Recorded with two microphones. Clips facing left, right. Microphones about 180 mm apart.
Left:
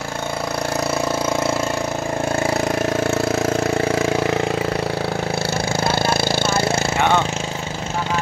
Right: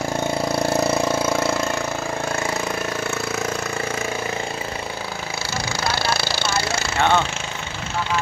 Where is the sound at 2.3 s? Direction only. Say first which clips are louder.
Left 7 dB; 35° left (ahead or behind).